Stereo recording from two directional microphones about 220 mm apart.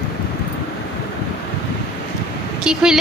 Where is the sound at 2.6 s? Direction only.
5° right (ahead or behind).